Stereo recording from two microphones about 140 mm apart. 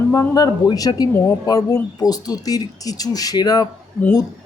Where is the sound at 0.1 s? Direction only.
30° left (ahead or behind).